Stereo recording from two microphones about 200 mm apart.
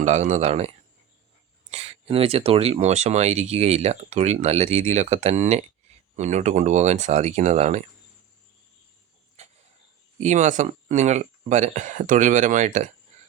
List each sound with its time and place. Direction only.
0.0 s speech: 35° right (ahead or behind)
1.7 s speech: 30° right (ahead or behind)
10.2 s speech: 35° right (ahead or behind)